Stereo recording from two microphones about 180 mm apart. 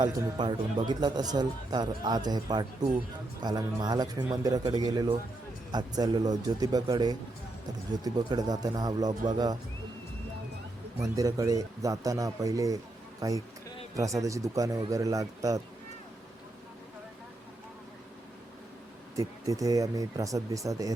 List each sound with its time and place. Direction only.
0.0 s speech: 25° right (ahead or behind)
11.0 s speech: 20° right (ahead or behind)
19.1 s speech: 20° right (ahead or behind)